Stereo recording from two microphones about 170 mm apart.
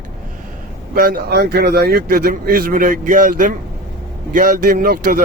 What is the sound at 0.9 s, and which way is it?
Speech, 60° right (ahead or behind).